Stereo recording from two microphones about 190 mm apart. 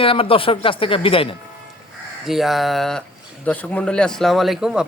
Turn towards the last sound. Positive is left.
turn(degrees=-5)  # may be behind; listen again after turning